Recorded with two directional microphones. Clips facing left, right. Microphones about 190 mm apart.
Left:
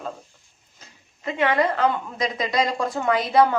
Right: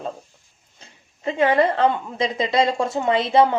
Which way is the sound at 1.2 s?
30° right (ahead or behind).